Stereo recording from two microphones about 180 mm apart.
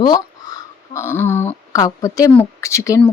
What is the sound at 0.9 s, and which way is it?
Speech, 15° left (ahead or behind).